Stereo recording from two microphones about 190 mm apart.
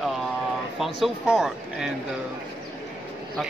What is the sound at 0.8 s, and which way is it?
Speech, centre (ahead or behind).